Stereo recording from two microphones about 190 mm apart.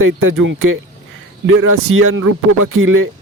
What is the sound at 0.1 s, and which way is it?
Speech, 90° right.